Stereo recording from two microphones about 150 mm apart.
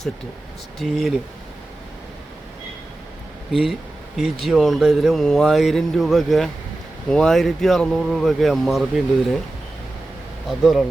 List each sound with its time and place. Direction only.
0.8 s speech: centre (ahead or behind)
3.5 s speech: centre (ahead or behind)
10.6 s speech: 5° right (ahead or behind)